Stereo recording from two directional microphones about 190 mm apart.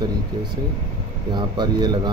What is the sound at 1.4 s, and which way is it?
Speech, 25° right (ahead or behind).